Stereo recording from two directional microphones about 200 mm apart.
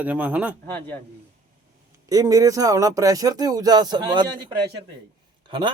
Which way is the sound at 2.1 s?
20° right (ahead or behind).